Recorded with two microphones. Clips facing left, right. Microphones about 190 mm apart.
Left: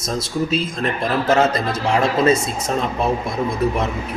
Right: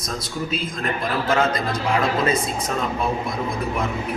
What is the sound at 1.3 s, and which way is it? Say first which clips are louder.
A man's voice: left 3 dB; 25° left (ahead or behind).